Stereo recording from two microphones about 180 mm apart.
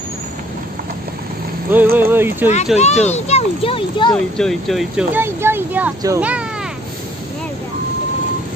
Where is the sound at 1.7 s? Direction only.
10° right (ahead or behind).